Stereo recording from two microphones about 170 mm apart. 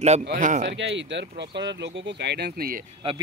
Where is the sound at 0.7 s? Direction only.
90° right; by 2.8 s 60° right (ahead or behind).